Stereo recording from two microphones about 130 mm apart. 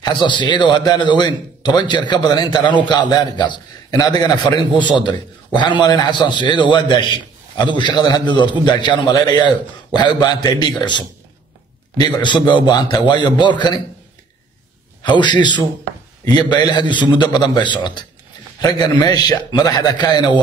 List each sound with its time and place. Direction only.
0.0 s a man's voice: 35° left (ahead or behind)
15.0 s a man's voice: 35° left (ahead or behind)